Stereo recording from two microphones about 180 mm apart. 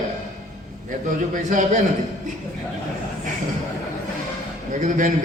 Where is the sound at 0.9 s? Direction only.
45° right (ahead or behind).